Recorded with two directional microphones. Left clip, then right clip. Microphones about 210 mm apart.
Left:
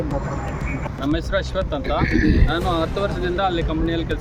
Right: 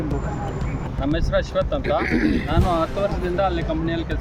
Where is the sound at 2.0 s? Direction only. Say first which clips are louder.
Left 1 dB; 50° right (ahead or behind).